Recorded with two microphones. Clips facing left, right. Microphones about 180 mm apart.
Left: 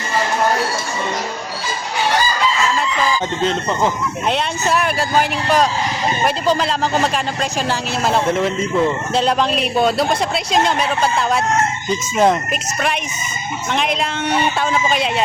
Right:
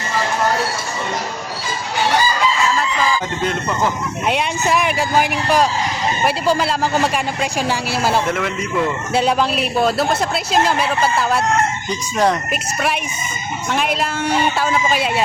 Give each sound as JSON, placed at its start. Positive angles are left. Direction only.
{"t": 3.4, "sound": "speech", "side_deg": 25}
{"t": 4.3, "sound": "speech", "side_deg": -10}
{"t": 8.3, "sound": "speech", "side_deg": 30}
{"t": 9.1, "sound": "a man's voice", "side_deg": -5}
{"t": 12.1, "sound": "speech", "side_deg": 20}
{"t": 12.5, "sound": "a man's voice", "side_deg": -5}